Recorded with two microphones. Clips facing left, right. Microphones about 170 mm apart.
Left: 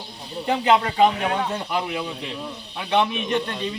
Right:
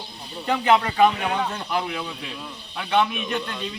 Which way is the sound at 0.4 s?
20° left (ahead or behind).